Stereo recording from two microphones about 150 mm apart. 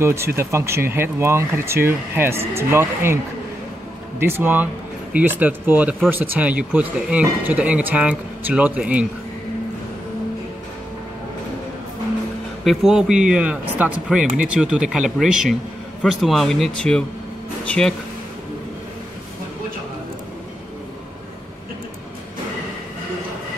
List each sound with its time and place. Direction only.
0.0 s speech: 20° right (ahead or behind)
4.2 s speech: 15° right (ahead or behind)
12.6 s speech: centre (ahead or behind)